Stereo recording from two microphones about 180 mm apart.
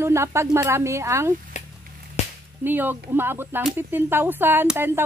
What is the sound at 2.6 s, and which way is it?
Speech, 10° right (ahead or behind).